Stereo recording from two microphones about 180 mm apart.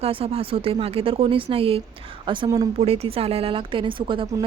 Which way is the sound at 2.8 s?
35° right (ahead or behind).